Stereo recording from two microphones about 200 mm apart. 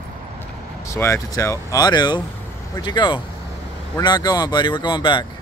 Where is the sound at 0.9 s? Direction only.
15° left (ahead or behind).